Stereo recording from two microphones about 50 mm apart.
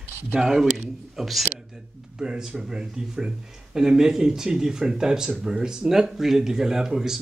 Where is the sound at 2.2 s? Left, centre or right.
Centre.